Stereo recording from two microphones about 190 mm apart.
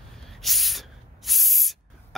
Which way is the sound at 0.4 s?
Centre (ahead or behind).